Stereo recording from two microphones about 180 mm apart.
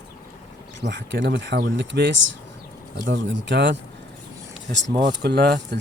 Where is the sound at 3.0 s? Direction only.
90° right.